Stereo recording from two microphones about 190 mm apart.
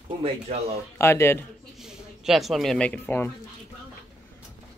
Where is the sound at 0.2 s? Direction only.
30° right (ahead or behind).